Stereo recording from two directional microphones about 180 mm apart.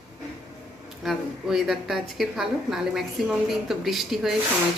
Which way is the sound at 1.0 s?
Centre (ahead or behind).